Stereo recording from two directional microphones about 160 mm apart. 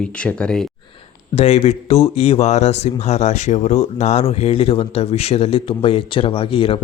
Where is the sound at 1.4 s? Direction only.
40° left (ahead or behind).